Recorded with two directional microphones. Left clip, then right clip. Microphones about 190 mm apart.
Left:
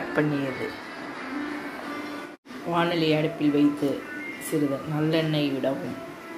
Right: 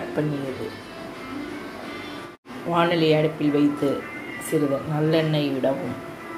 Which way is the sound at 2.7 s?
5° right (ahead or behind).